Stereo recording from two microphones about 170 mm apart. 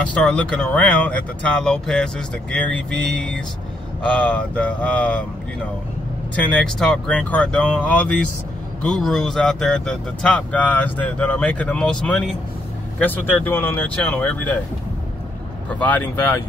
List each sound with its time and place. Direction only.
0.1 s speech: 5° left (ahead or behind)
6.3 s speech: 5° left (ahead or behind)
15.7 s speech: 10° left (ahead or behind)